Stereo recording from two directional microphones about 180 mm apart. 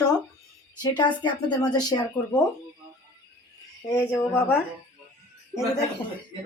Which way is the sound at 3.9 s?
15° left (ahead or behind).